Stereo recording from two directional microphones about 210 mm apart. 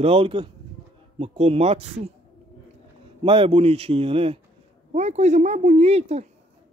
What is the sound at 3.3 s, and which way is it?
A man's voice, 25° right (ahead or behind).